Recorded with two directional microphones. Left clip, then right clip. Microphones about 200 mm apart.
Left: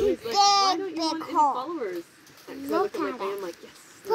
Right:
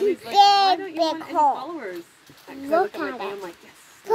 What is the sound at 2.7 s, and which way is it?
Speech, 25° right (ahead or behind).